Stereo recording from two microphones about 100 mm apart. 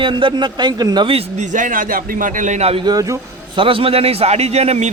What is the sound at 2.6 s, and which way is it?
Speech, 90° right.